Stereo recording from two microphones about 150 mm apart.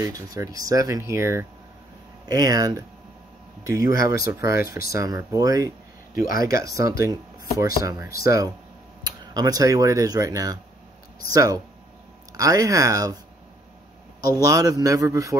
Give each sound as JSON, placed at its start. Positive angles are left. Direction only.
{"t": 0.0, "sound": "speech", "side_deg": -20}
{"t": 3.9, "sound": "speech", "side_deg": 80}
{"t": 4.2, "sound": "speech", "side_deg": -20}
{"t": 4.6, "sound": "speech", "side_deg": 85}
{"t": 4.9, "sound": "speech", "side_deg": -25}
{"t": 6.1, "sound": "speech", "side_deg": 70}
{"t": 6.4, "sound": "speech", "side_deg": -20}
{"t": 14.4, "sound": "speech", "side_deg": -25}